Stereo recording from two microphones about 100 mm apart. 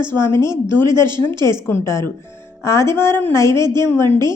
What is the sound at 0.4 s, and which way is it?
Speech, 45° right (ahead or behind).